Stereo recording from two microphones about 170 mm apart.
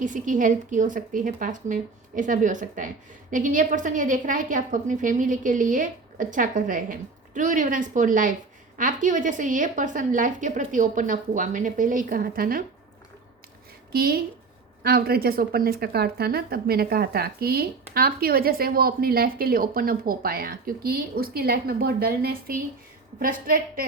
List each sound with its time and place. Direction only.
0.0 s a woman's voice: 50° right (ahead or behind)
13.9 s speech: 65° right (ahead or behind)